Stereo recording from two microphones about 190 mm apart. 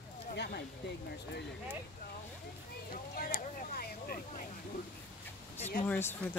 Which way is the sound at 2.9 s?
50° left (ahead or behind).